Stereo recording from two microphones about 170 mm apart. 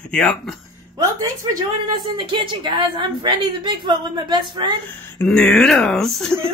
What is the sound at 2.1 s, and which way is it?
A woman's voice, 30° right (ahead or behind).